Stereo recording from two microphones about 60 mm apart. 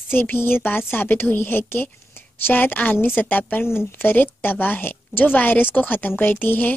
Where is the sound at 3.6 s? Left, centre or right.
Left.